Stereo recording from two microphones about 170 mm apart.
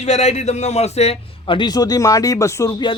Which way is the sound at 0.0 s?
40° left (ahead or behind).